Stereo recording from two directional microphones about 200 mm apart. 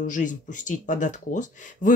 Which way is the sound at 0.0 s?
40° left (ahead or behind).